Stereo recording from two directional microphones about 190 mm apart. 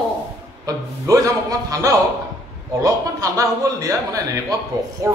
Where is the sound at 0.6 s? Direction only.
15° right (ahead or behind).